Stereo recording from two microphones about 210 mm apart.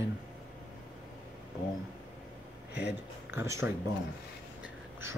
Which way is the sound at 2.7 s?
55° left (ahead or behind).